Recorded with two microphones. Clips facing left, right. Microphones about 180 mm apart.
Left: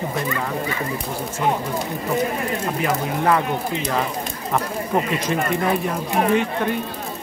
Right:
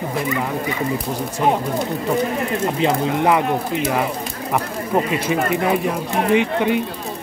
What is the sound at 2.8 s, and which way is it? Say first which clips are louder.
Speech: right 3 dB; 15° right (ahead or behind).